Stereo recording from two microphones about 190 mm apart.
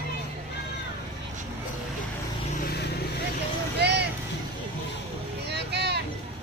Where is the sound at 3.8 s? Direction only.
60° right (ahead or behind).